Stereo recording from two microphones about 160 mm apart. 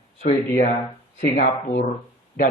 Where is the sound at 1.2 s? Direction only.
70° left (ahead or behind).